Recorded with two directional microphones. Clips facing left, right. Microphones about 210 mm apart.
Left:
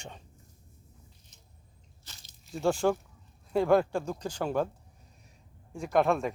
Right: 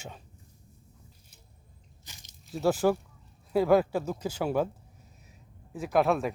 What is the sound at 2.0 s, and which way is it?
Biting, 15° right (ahead or behind).